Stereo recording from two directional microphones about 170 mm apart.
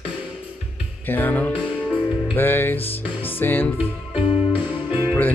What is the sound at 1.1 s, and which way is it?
Music, 10° left (ahead or behind).